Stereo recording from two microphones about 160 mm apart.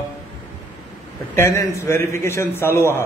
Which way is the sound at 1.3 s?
15° left (ahead or behind).